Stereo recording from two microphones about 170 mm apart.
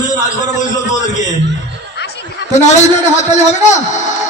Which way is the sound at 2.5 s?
45° left (ahead or behind).